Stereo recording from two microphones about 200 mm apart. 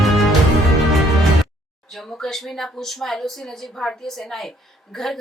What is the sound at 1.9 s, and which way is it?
Speech, centre (ahead or behind).